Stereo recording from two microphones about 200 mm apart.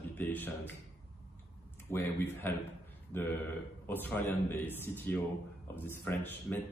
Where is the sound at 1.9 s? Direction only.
10° left (ahead or behind).